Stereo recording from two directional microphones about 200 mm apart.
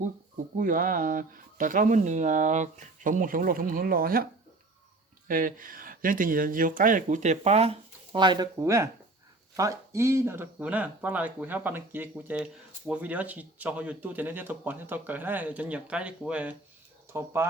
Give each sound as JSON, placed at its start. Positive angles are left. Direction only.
{"t": 0.5, "sound": "speech", "side_deg": -40}
{"t": 5.3, "sound": "speech", "side_deg": -40}